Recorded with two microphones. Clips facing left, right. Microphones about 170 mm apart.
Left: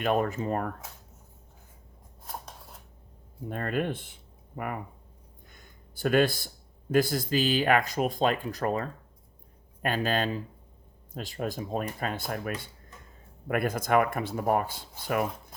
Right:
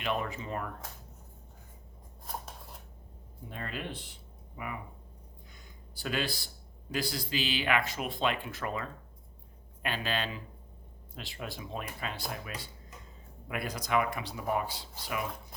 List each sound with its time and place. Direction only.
0.0 s speech: 45° left (ahead or behind)
2.2 s scissors: centre (ahead or behind)
3.5 s speech: 50° left (ahead or behind)
5.5 s a sound: 50° left (ahead or behind)
6.9 s speech: 50° left (ahead or behind)